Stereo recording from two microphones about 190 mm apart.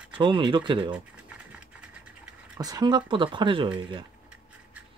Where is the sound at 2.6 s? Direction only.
20° right (ahead or behind).